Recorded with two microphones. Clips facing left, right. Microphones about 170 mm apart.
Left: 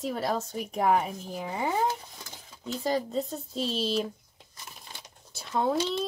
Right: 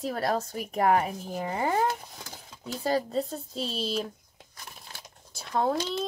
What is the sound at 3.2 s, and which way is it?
Speech, centre (ahead or behind).